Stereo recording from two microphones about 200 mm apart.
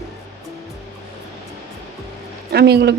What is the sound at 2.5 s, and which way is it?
Speech, 55° right (ahead or behind).